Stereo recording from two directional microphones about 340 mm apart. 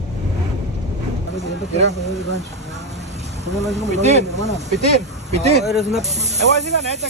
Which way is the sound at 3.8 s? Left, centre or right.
Centre.